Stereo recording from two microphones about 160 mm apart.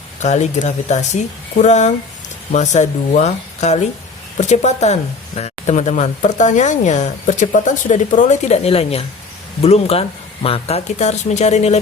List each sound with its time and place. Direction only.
0.2 s speech: 45° left (ahead or behind)